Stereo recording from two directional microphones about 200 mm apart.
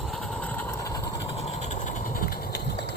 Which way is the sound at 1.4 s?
35° left (ahead or behind).